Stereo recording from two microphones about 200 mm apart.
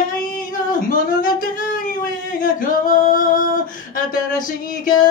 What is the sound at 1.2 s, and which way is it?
Singing, 45° left (ahead or behind).